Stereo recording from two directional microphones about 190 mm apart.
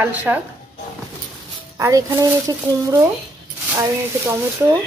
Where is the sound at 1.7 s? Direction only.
15° right (ahead or behind).